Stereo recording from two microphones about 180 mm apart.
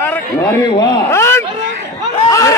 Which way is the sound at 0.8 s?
15° left (ahead or behind).